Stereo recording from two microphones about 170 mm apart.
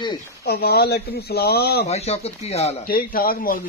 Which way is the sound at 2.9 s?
60° left (ahead or behind).